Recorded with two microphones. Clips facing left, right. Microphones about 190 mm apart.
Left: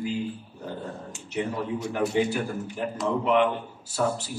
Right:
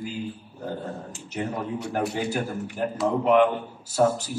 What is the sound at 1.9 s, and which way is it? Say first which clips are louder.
A man's voice: left 2 dB; 40° right (ahead or behind).